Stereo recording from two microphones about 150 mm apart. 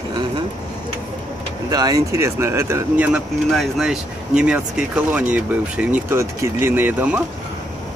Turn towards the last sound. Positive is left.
turn(degrees=-10)  # may be behind; listen again after turning